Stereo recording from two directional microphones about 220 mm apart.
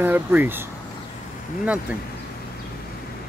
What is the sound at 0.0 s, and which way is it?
Speech, 10° right (ahead or behind).